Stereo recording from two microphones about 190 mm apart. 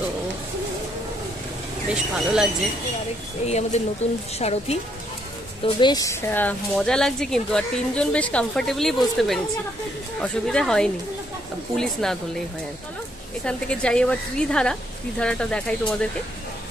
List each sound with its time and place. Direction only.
2.1 s a woman's voice: centre (ahead or behind)
3.4 s a woman's voice: 35° left (ahead or behind)
5.6 s a woman's voice: 25° left (ahead or behind); by 12.2 s 5° left (ahead or behind)
13.4 s a woman's voice: 5° left (ahead or behind)